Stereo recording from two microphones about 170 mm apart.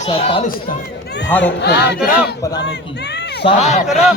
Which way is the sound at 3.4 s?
40° left (ahead or behind).